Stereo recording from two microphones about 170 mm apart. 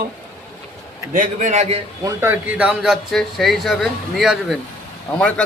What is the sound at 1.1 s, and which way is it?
Speech, 45° right (ahead or behind).